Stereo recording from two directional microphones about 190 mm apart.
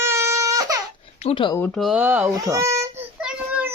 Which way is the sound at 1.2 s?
25° left (ahead or behind).